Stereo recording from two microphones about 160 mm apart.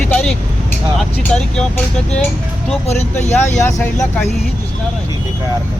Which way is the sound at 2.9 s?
45° left (ahead or behind).